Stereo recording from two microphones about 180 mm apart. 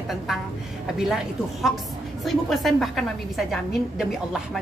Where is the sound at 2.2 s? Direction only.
Centre (ahead or behind).